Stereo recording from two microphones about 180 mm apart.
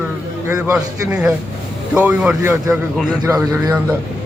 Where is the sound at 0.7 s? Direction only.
5° right (ahead or behind).